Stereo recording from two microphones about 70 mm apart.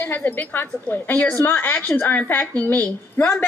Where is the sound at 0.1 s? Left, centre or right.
Left.